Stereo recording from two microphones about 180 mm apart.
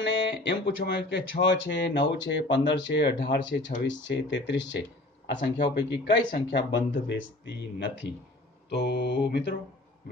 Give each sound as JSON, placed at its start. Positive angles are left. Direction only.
{"t": 0.0, "sound": "speech", "side_deg": 80}
{"t": 8.6, "sound": "mantra", "side_deg": 65}